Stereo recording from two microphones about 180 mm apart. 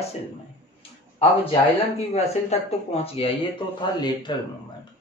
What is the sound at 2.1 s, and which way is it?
Speech, 35° left (ahead or behind).